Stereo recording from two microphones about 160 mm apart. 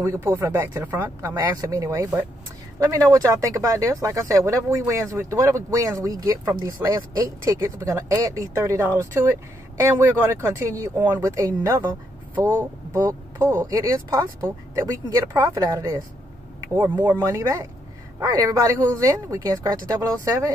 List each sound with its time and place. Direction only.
0.0 s speech: 15° right (ahead or behind)
12.9 s speech: 20° right (ahead or behind)